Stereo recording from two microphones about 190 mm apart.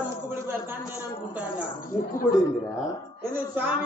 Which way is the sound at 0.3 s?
10° right (ahead or behind).